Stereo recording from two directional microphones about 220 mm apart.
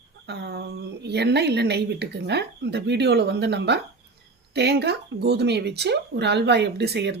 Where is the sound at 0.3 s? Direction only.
50° right (ahead or behind).